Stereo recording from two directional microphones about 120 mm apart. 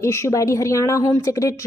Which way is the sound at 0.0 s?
25° left (ahead or behind).